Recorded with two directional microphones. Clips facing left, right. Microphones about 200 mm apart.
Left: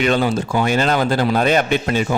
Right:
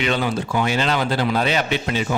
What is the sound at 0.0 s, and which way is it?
Speech, 45° left (ahead or behind).